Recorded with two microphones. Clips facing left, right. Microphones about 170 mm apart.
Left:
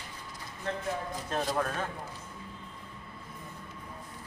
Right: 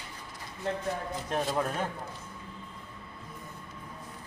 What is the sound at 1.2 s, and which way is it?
Speech, 15° right (ahead or behind).